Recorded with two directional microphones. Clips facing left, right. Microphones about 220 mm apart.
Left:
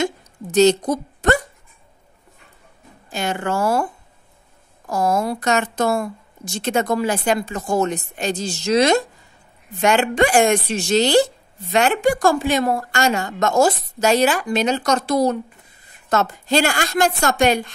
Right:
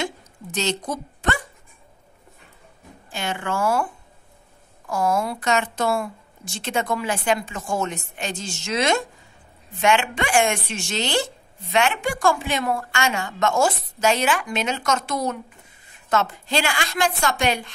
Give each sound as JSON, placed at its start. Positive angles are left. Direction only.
{"t": 0.0, "sound": "a woman's voice", "side_deg": 40}
{"t": 3.1, "sound": "a woman's voice", "side_deg": 40}